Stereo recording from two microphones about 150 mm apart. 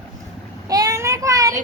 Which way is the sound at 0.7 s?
25° right (ahead or behind).